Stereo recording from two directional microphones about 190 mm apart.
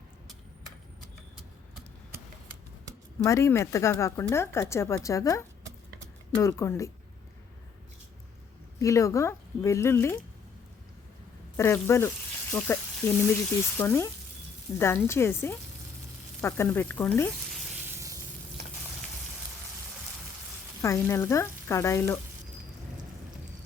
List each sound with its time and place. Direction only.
2.1 s a sound: 10° right (ahead or behind)
3.2 s speech: 15° left (ahead or behind)
8.8 s speech: 15° left (ahead or behind)
11.5 s speech: 15° left (ahead or behind)
16.4 s sizzle: 10° left (ahead or behind)
17.8 s spray: 15° right (ahead or behind)
20.8 s speech: 15° left (ahead or behind)